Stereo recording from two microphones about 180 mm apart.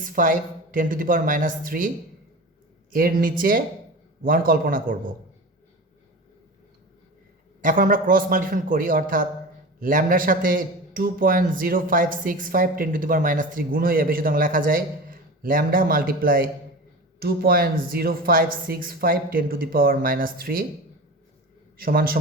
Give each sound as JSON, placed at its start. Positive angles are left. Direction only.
{"t": 0.0, "sound": "a man's voice", "side_deg": -50}
{"t": 2.9, "sound": "a man's voice", "side_deg": -50}
{"t": 7.6, "sound": "a man's voice", "side_deg": -50}
{"t": 21.8, "sound": "a man's voice", "side_deg": -55}